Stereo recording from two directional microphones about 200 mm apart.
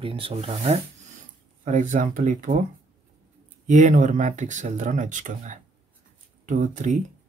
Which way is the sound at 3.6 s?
40° right (ahead or behind).